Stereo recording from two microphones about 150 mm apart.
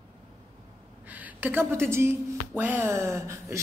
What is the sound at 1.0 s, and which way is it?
A man's voice, 10° right (ahead or behind).